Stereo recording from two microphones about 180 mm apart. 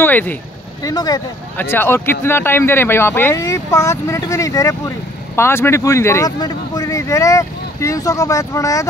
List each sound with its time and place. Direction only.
0.0 s speech: 10° left (ahead or behind)
0.8 s speech: 20° left (ahead or behind)